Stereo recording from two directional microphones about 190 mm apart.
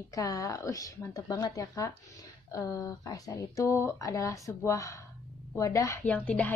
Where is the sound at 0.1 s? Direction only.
15° left (ahead or behind).